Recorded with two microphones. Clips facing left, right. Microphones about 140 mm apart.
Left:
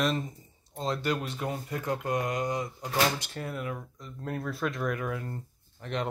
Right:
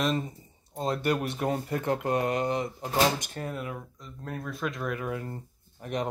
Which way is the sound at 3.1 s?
45° right (ahead or behind).